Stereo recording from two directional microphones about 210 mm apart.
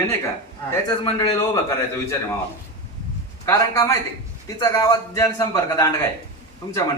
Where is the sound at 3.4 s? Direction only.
15° left (ahead or behind).